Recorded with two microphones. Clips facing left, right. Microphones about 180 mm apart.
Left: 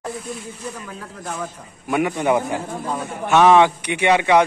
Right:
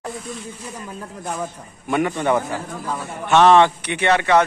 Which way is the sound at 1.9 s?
10° left (ahead or behind).